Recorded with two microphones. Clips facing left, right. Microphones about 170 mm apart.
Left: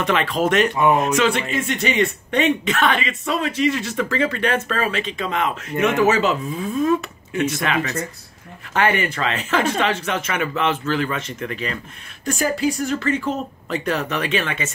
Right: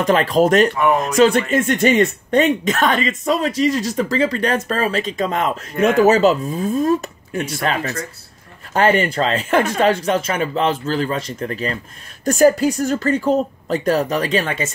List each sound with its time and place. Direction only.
0.0 s speech: 40° right (ahead or behind)
0.7 s speech: 15° left (ahead or behind)
1.1 s speech: 40° right (ahead or behind)